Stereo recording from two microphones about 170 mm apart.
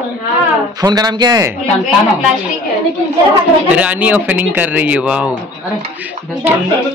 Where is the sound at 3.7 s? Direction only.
10° right (ahead or behind).